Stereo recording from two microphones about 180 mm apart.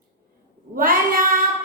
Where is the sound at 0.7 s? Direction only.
50° right (ahead or behind).